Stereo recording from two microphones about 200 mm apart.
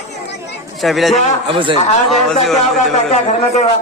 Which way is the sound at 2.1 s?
Centre (ahead or behind).